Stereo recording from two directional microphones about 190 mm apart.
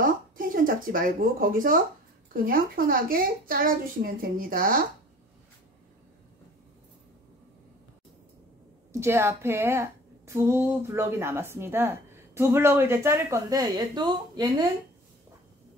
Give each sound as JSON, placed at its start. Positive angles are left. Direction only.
{"t": 0.0, "sound": "a woman's voice", "side_deg": -45}
{"t": 9.0, "sound": "a woman's voice", "side_deg": -15}